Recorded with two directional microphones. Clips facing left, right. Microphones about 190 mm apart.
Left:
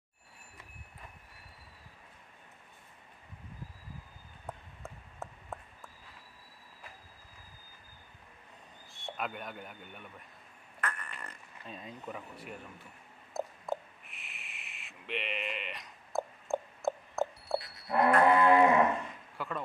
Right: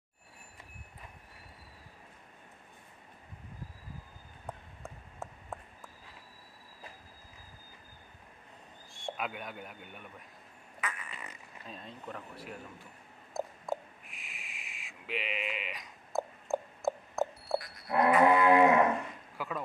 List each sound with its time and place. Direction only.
4.5 s a sound: centre (ahead or behind)
8.9 s speech: centre (ahead or behind)
10.8 s fart: 5° right (ahead or behind)
13.3 s owl: centre (ahead or behind)
17.8 s cattle: centre (ahead or behind)
19.3 s a sound: 5° right (ahead or behind)